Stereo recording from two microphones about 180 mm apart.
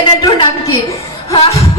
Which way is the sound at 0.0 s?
25° left (ahead or behind).